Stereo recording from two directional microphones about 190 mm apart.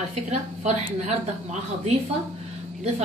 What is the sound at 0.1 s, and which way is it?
Speech, 35° right (ahead or behind).